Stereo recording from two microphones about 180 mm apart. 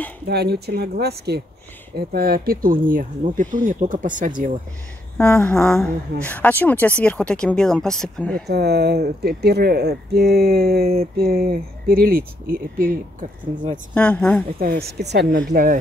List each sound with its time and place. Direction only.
0.3 s speech: 65° right (ahead or behind); by 4.3 s 45° right (ahead or behind)
5.1 s a sound: 10° left (ahead or behind)
7.0 s speech: 5° left (ahead or behind)
8.5 s speech: 65° right (ahead or behind)
13.9 s a sound: 5° left (ahead or behind)
14.6 s speech: 60° right (ahead or behind)